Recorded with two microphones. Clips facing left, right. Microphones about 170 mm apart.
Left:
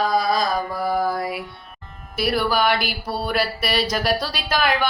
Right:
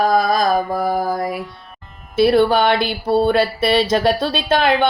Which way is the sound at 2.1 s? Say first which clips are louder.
Right 8 dB; 25° right (ahead or behind).